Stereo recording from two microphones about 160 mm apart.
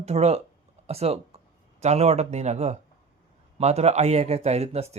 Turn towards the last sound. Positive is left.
turn(degrees=-40)  # may be behind; listen again after turning